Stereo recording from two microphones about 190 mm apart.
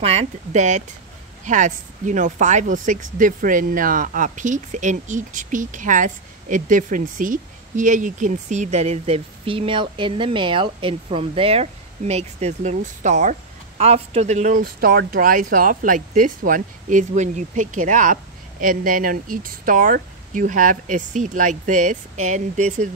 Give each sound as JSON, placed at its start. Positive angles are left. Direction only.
{"t": 0.0, "sound": "speech", "side_deg": -35}